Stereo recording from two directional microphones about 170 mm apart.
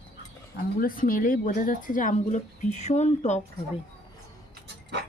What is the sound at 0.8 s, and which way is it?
Speech, 55° left (ahead or behind).